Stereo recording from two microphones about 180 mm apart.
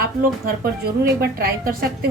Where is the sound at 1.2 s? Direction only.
60° right (ahead or behind).